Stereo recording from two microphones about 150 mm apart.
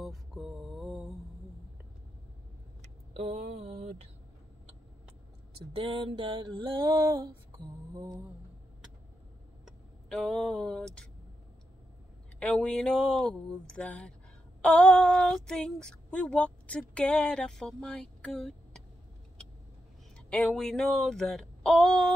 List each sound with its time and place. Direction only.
0.0 s music: centre (ahead or behind)
2.8 s vehicle: 45° right (ahead or behind)
5.8 s a sound: 35° right (ahead or behind)
7.5 s lullaby: 25° right (ahead or behind)
9.7 s vehicle: 5° left (ahead or behind)
12.4 s speech: 5° left (ahead or behind)
20.2 s speech: 5° left (ahead or behind)